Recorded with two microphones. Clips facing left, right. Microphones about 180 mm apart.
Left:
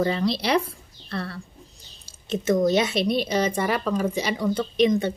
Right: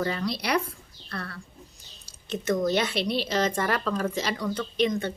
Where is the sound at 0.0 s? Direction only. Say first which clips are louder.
Left 5 dB; 25° left (ahead or behind).